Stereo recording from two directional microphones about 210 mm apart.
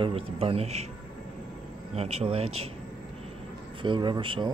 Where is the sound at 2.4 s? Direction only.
90° right.